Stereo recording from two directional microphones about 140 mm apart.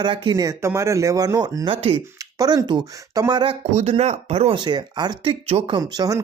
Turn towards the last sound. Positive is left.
turn(degrees=-25)  # may be behind; listen again after turning